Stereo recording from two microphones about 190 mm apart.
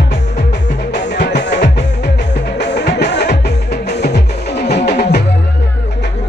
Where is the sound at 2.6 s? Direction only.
60° left (ahead or behind).